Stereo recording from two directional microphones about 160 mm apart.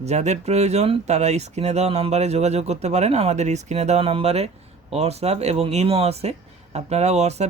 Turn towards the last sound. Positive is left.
turn(degrees=-45)  # may be behind; listen again after turning